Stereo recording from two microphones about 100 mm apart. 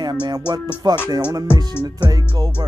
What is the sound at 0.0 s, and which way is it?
Speech, 45° right (ahead or behind).